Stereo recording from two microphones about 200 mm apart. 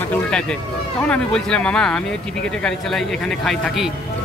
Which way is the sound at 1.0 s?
5° left (ahead or behind).